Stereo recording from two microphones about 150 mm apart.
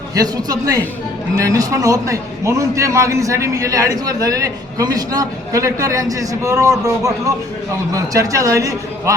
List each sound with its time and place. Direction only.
0.1 s a man's voice: 25° right (ahead or behind)